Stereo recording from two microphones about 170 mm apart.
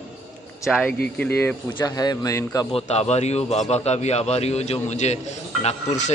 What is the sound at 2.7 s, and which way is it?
A man's voice, 40° left (ahead or behind).